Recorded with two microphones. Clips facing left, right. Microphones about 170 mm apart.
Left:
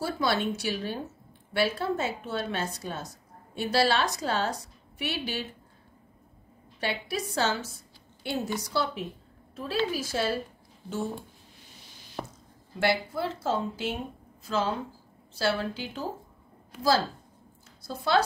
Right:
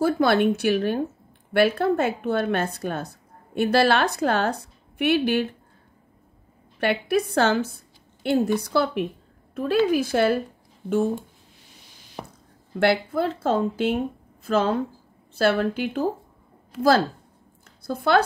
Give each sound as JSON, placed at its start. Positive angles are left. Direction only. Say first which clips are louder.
{"t": 0.0, "sound": "a woman's voice", "louder": "right 9 dB", "side_deg": -55}
{"t": 6.8, "sound": "a woman's voice", "louder": "right 9 dB", "side_deg": -60}
{"t": 12.2, "sound": "chop", "louder": "even", "side_deg": -10}
{"t": 12.7, "sound": "a woman's voice", "louder": "right 6 dB", "side_deg": -55}
{"t": 17.8, "sound": "a woman's voice", "louder": "right 5 dB", "side_deg": -55}